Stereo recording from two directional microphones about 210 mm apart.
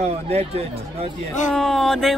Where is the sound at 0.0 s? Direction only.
30° right (ahead or behind).